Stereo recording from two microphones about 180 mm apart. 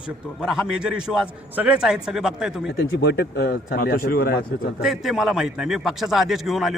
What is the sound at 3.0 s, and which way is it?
A man's voice, 65° left (ahead or behind).